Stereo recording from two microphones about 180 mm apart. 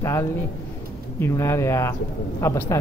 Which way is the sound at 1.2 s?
15° left (ahead or behind).